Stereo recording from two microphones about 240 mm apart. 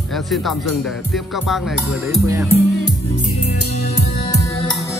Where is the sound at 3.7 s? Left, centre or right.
Left.